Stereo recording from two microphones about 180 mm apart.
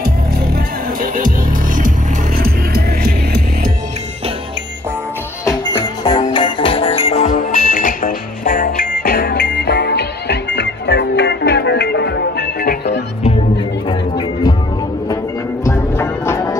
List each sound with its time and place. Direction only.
1.0 s music: 50° right (ahead or behind)
2.3 s music: 55° right (ahead or behind)
5.4 s music: 15° left (ahead or behind); by 13.0 s 65° left (ahead or behind)
13.8 s music: 25° left (ahead or behind)
15.6 s music: 15° left (ahead or behind)